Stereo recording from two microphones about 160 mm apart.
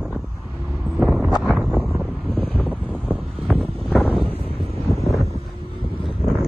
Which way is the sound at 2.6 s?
5° right (ahead or behind).